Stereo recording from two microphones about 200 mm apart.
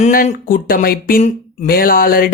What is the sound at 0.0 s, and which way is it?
Speech, 40° left (ahead or behind).